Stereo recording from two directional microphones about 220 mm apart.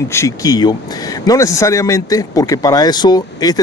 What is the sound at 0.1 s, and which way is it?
Speech, 15° left (ahead or behind).